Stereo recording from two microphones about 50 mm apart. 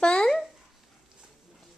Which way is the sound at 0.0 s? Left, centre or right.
Centre.